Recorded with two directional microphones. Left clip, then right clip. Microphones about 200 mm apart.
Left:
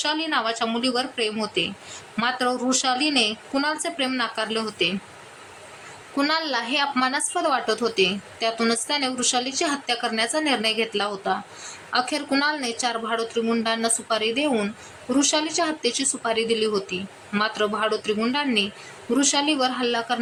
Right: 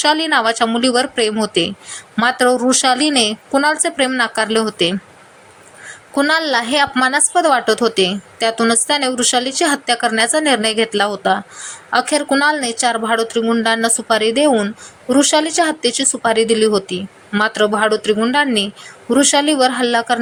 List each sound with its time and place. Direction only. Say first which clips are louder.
0.0 s a woman's voice: right 10 dB; 30° right (ahead or behind)
6.1 s a woman's voice: right 9 dB; 25° right (ahead or behind)